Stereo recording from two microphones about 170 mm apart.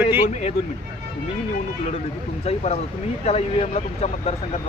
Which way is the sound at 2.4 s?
35° left (ahead or behind).